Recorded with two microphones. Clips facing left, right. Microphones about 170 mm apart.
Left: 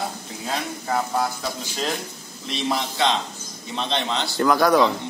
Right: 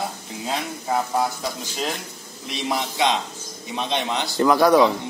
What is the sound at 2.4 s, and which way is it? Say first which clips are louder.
A man's voice: left 1 dB; 10° right (ahead or behind).